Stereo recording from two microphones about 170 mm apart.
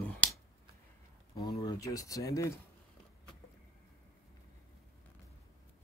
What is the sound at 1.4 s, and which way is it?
Speech, 20° left (ahead or behind).